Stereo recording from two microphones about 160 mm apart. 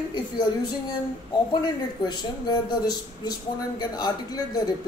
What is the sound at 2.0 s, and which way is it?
Speech, 25° left (ahead or behind).